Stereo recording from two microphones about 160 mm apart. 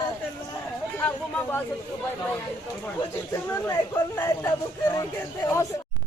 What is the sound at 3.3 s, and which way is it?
Speech, 15° left (ahead or behind).